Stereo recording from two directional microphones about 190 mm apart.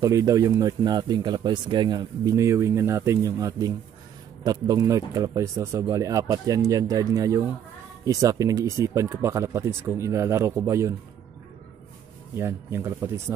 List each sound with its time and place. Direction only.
0.0 s speech: 15° right (ahead or behind)
12.4 s speech: 15° right (ahead or behind)